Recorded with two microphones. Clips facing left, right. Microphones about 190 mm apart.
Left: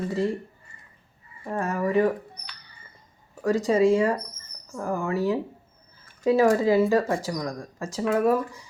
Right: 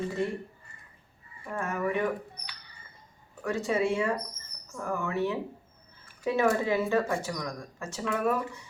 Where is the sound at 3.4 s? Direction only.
40° left (ahead or behind).